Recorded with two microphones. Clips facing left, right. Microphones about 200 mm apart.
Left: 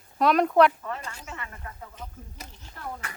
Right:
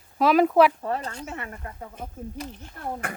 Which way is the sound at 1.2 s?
50° right (ahead or behind).